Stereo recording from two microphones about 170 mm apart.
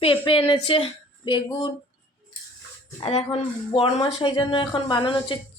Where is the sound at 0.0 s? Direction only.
30° left (ahead or behind).